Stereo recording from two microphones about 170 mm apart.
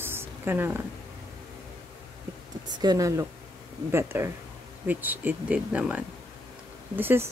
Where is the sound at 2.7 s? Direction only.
20° right (ahead or behind).